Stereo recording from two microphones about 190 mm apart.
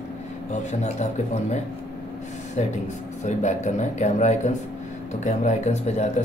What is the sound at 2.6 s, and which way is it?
Speech, 35° left (ahead or behind).